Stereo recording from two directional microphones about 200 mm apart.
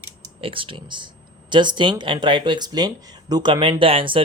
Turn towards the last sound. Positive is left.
turn(degrees=-25)  # may be behind; listen again after turning